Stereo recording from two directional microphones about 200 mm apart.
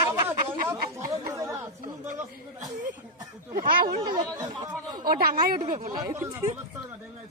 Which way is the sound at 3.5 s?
45° right (ahead or behind).